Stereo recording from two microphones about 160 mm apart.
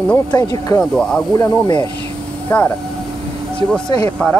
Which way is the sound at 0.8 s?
5° left (ahead or behind).